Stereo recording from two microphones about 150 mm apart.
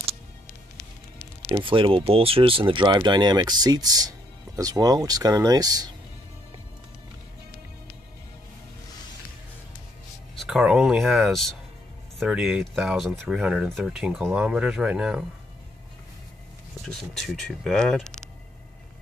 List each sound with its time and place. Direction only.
1.5 s speech: 35° right (ahead or behind)
10.3 s speech: centre (ahead or behind)
16.8 s speech: centre (ahead or behind)